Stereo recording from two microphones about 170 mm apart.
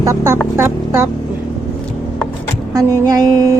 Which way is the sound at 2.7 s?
20° right (ahead or behind).